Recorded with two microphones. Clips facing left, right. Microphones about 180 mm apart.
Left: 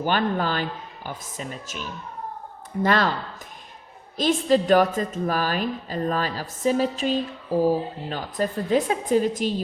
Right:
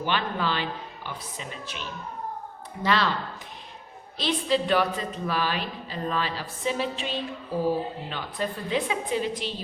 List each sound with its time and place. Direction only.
0.0 s a woman's voice: 45° left (ahead or behind)
4.2 s a woman's voice: 45° left (ahead or behind)